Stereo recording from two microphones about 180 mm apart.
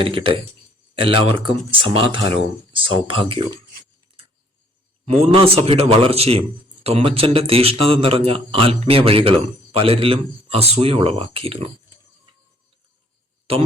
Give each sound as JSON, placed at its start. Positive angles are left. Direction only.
{"t": 0.0, "sound": "speech", "side_deg": -30}
{"t": 5.0, "sound": "a man's voice", "side_deg": -35}